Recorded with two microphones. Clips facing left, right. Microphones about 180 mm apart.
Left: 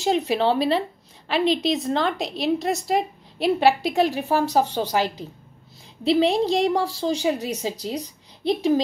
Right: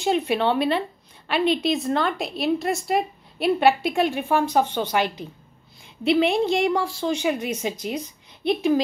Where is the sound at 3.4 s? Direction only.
30° left (ahead or behind).